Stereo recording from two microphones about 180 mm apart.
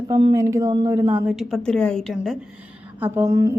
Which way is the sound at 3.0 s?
15° right (ahead or behind).